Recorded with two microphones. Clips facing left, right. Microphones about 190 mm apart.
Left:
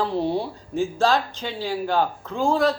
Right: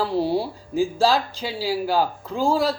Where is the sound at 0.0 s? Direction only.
5° right (ahead or behind).